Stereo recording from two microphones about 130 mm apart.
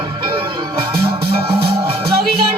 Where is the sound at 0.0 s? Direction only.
40° right (ahead or behind).